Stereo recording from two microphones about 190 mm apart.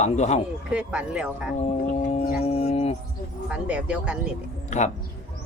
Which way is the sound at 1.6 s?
35° left (ahead or behind).